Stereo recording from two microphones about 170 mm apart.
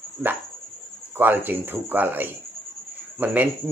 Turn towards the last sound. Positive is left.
turn(degrees=-10)  # may be behind; listen again after turning